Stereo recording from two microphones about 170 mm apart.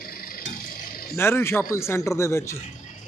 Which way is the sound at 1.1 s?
15° left (ahead or behind).